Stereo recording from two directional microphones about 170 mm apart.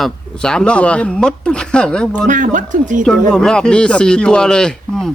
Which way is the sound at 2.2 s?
50° right (ahead or behind).